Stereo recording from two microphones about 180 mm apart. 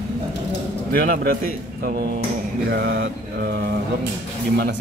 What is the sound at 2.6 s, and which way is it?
Mantra, 65° right (ahead or behind).